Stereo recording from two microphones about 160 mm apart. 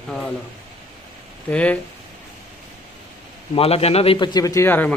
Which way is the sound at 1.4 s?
10° left (ahead or behind).